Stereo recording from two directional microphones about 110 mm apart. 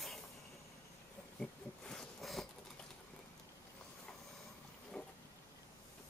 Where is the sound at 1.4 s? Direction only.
5° left (ahead or behind).